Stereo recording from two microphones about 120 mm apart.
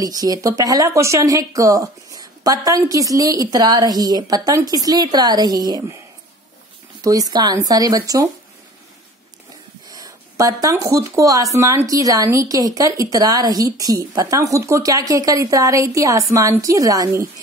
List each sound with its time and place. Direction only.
0.0 s speech: 30° right (ahead or behind)
7.0 s speech: 30° right (ahead or behind)
9.8 s speech: 30° right (ahead or behind)